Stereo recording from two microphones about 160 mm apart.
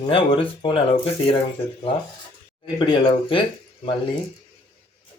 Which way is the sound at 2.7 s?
30° left (ahead or behind).